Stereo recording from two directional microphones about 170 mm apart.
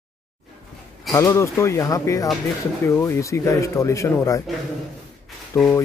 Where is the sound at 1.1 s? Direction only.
15° left (ahead or behind).